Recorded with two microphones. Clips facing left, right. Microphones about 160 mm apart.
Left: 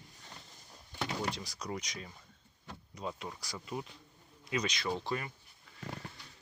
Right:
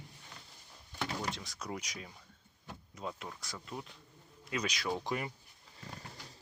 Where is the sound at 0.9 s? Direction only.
Centre (ahead or behind); by 5.3 s 15° right (ahead or behind).